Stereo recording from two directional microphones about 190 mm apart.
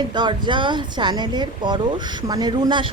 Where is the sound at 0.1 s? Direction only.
25° right (ahead or behind).